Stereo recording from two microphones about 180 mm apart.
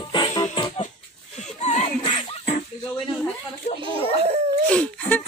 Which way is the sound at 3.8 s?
35° right (ahead or behind).